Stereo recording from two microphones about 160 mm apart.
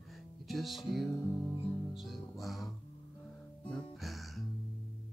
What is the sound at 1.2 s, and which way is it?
Music, 15° left (ahead or behind).